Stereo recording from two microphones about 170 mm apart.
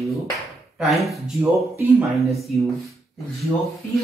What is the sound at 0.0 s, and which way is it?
Speech, centre (ahead or behind).